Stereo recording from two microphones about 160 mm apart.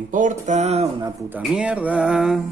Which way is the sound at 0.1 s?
50° right (ahead or behind).